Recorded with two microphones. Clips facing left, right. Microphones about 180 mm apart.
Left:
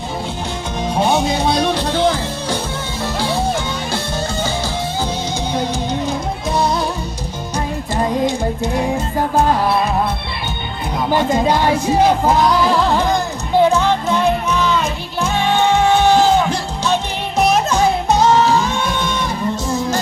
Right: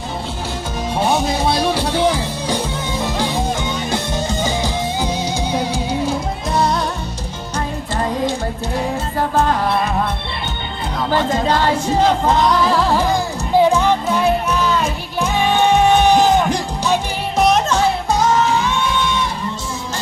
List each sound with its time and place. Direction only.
0.9 s music: centre (ahead or behind)
11.1 s music: 15° left (ahead or behind); by 17.0 s 15° right (ahead or behind)
17.3 s music: 5° left (ahead or behind)
18.1 s music: 30° left (ahead or behind)